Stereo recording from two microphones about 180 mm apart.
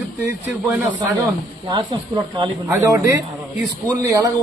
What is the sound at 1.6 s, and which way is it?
A man's voice, 25° right (ahead or behind).